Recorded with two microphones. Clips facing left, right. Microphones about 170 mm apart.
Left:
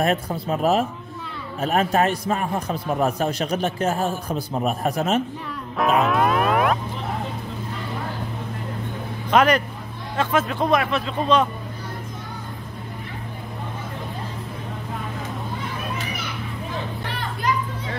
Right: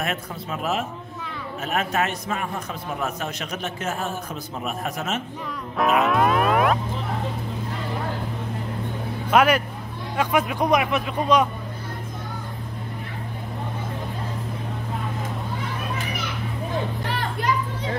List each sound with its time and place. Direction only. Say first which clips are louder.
0.0 s a man's voice: left 7 dB; 35° left (ahead or behind)
5.8 s music: even; centre (ahead or behind)
9.3 s speech: left 1 dB; 10° right (ahead or behind)